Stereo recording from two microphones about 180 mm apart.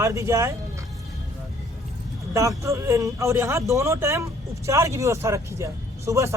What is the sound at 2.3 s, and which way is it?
Speech, 15° right (ahead or behind).